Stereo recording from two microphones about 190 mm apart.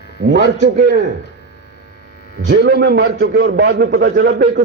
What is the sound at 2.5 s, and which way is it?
A man's voice, 60° right (ahead or behind).